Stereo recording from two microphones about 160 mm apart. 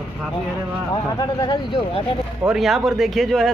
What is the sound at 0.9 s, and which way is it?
Speech, 25° left (ahead or behind).